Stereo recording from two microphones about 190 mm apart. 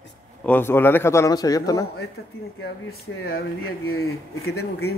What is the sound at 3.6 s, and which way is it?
Speech, 90° left.